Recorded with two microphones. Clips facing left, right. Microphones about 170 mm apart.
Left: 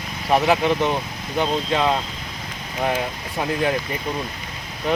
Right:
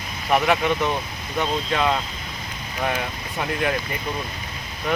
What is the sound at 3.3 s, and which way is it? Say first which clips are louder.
Speech: left 2 dB; 25° left (ahead or behind).